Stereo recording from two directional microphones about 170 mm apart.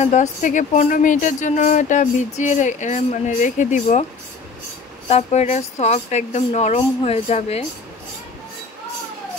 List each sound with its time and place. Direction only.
0.0 s speech: 45° left (ahead or behind)
5.0 s speech: 40° left (ahead or behind)